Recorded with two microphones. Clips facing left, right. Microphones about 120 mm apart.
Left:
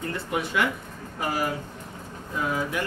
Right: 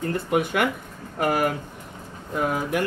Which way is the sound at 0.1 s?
50° right (ahead or behind).